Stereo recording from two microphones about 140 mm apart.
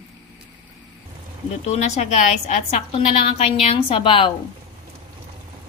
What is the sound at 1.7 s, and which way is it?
A woman's voice, 50° left (ahead or behind).